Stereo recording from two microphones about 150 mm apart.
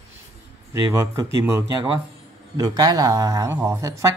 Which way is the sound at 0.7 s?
25° right (ahead or behind).